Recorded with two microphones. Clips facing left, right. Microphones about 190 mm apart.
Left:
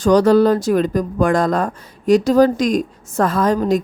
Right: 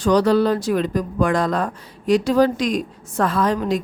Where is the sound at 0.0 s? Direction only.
45° left (ahead or behind).